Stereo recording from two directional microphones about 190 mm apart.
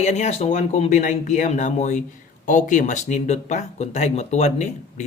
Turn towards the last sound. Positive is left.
turn(degrees=35)  # may be behind; listen again after turning